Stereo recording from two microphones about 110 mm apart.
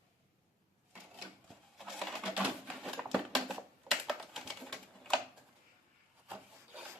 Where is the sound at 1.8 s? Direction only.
Centre (ahead or behind).